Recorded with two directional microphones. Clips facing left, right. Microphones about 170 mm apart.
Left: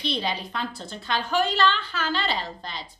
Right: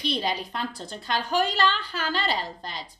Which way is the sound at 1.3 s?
40° right (ahead or behind).